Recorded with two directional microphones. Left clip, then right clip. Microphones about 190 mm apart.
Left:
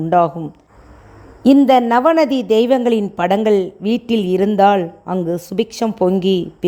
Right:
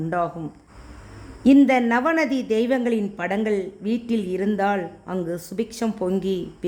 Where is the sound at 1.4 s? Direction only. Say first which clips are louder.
Left 6 dB; 25° left (ahead or behind).